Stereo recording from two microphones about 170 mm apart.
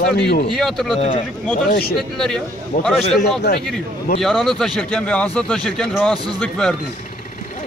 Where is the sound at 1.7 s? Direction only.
65° left (ahead or behind).